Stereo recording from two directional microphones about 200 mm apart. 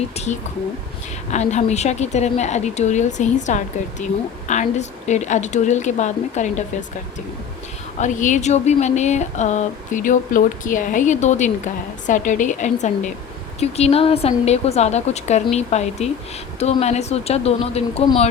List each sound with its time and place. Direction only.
1.3 s speech: 35° left (ahead or behind)
7.9 s speech: 40° left (ahead or behind)